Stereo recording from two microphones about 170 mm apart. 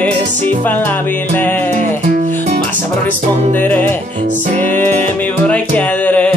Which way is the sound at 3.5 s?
10° left (ahead or behind).